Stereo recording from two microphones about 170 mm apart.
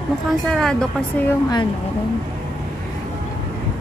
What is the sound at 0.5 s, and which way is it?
Speech, 5° left (ahead or behind).